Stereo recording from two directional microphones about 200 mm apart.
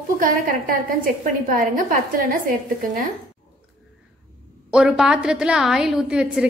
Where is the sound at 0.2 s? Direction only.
45° right (ahead or behind).